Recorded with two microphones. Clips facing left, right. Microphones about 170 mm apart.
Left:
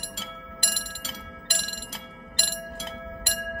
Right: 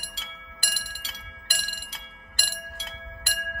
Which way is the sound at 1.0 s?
45° left (ahead or behind).